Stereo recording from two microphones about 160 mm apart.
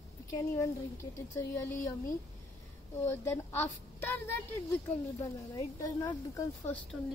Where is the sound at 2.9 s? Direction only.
15° left (ahead or behind).